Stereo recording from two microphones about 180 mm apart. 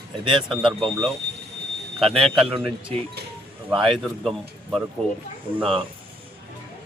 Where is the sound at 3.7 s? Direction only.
Centre (ahead or behind).